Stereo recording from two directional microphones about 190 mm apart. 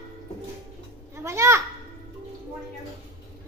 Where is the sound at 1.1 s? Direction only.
15° right (ahead or behind).